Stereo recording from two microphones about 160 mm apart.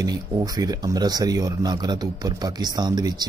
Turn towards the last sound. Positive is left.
turn(degrees=-25)  # may be behind; listen again after turning